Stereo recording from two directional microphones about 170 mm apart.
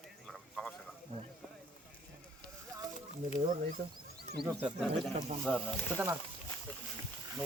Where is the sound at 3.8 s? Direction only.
60° right (ahead or behind).